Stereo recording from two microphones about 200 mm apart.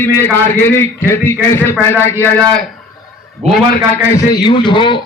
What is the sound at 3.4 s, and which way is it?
Speech, 35° right (ahead or behind).